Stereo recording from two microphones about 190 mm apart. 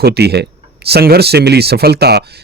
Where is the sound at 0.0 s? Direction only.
55° right (ahead or behind).